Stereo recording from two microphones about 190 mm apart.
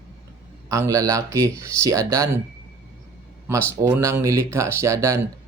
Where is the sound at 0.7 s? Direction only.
15° right (ahead or behind).